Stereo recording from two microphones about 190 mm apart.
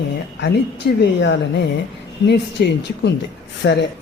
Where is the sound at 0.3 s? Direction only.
65° left (ahead or behind).